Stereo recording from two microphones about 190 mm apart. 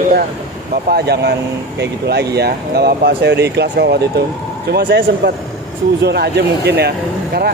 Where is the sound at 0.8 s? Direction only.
55° right (ahead or behind).